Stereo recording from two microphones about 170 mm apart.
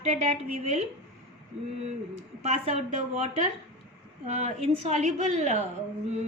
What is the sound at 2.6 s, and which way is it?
Speech, 40° right (ahead or behind).